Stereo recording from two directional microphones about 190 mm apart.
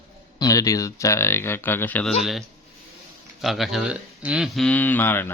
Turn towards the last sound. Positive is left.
turn(degrees=10)  # may be behind; listen again after turning